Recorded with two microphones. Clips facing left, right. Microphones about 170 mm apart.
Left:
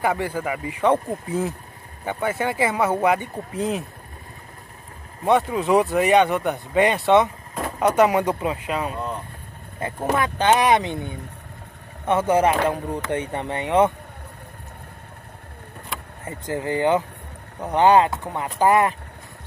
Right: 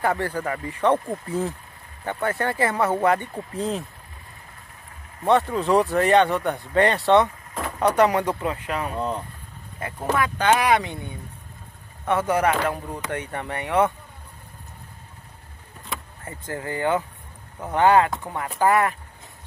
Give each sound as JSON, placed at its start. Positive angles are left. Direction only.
{"t": 0.3, "sound": "speech", "side_deg": 5}
{"t": 0.7, "sound": "speech", "side_deg": 15}
{"t": 5.2, "sound": "speech", "side_deg": 15}
{"t": 7.6, "sound": "vehicle", "side_deg": 20}
{"t": 8.0, "sound": "speech", "side_deg": 15}
{"t": 12.1, "sound": "speech", "side_deg": 20}
{"t": 16.3, "sound": "speech", "side_deg": 20}